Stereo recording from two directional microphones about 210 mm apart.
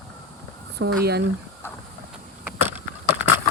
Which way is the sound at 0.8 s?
50° right (ahead or behind).